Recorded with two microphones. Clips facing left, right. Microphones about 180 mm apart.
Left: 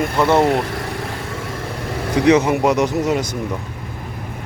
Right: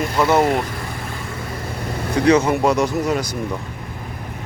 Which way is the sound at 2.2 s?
20° left (ahead or behind).